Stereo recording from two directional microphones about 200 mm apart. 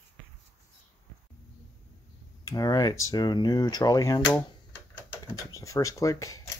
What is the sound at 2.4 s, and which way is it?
Speech, 20° left (ahead or behind).